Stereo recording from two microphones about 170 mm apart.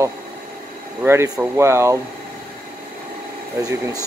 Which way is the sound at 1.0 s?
15° right (ahead or behind).